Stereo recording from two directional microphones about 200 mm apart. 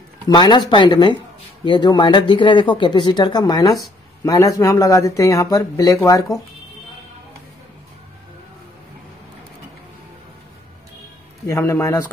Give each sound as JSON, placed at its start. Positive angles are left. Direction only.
{"t": 0.3, "sound": "speech", "side_deg": 20}
{"t": 11.4, "sound": "speech", "side_deg": 15}